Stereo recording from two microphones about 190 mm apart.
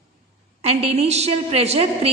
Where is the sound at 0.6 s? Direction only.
30° right (ahead or behind).